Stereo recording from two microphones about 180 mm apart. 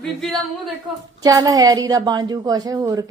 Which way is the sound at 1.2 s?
20° right (ahead or behind).